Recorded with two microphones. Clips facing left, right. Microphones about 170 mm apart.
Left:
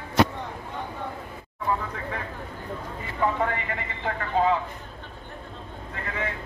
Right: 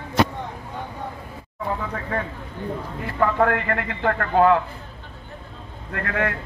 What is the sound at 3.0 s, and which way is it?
A man's voice, 70° right (ahead or behind).